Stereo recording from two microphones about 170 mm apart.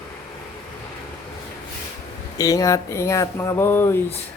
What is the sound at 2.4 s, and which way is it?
Speech, 20° left (ahead or behind).